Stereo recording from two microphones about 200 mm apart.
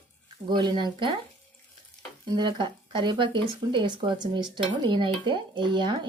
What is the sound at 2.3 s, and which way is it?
Dishes, 20° right (ahead or behind).